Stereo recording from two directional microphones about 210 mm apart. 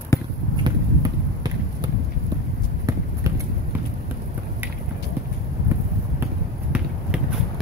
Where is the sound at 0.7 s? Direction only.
20° right (ahead or behind).